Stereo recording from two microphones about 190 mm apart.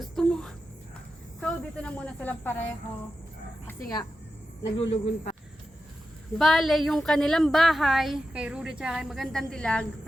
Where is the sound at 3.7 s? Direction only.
20° left (ahead or behind).